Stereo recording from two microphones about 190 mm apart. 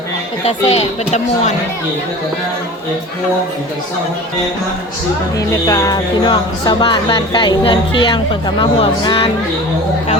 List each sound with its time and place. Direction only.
0.4 s speech: 35° left (ahead or behind)
5.4 s speech: 20° left (ahead or behind)